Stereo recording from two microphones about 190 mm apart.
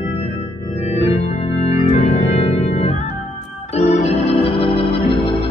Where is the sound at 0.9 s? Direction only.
35° left (ahead or behind).